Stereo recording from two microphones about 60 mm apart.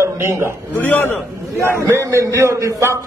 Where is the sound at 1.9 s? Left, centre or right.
Right.